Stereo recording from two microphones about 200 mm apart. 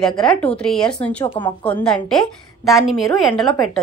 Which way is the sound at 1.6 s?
5° left (ahead or behind).